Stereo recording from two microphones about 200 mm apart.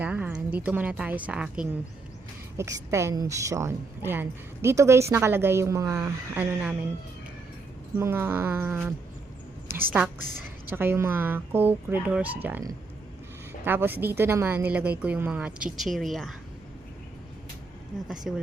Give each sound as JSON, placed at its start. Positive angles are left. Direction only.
{"t": 0.0, "sound": "a woman's voice", "side_deg": -10}
{"t": 7.9, "sound": "a woman's voice", "side_deg": -10}
{"t": 9.6, "sound": "a sound", "side_deg": -45}
{"t": 10.7, "sound": "a woman's voice", "side_deg": -10}
{"t": 17.9, "sound": "speech", "side_deg": 0}